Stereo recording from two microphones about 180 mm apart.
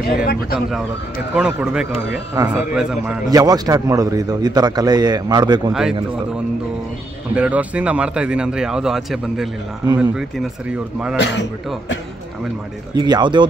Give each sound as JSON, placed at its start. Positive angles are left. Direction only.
{"t": 0.1, "sound": "speech", "side_deg": 55}
{"t": 1.3, "sound": "speech", "side_deg": -5}
{"t": 2.4, "sound": "a man's voice", "side_deg": -20}
{"t": 2.7, "sound": "speech", "side_deg": -5}
{"t": 3.3, "sound": "a man's voice", "side_deg": -20}
{"t": 5.7, "sound": "speech", "side_deg": -5}
{"t": 7.3, "sound": "speech", "side_deg": -10}
{"t": 11.1, "sound": "a man's voice", "side_deg": 75}
{"t": 12.9, "sound": "a man's voice", "side_deg": -25}